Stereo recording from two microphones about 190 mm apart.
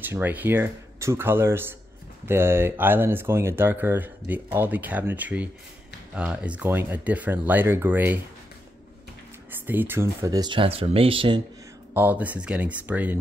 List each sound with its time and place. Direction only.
0.0 s speech: 10° right (ahead or behind)
9.5 s speech: 10° right (ahead or behind); by 11.4 s 25° right (ahead or behind)
11.9 s speech: 10° right (ahead or behind)